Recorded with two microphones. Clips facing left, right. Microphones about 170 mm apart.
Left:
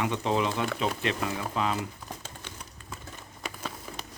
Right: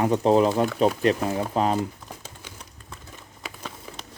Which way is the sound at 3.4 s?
Centre (ahead or behind).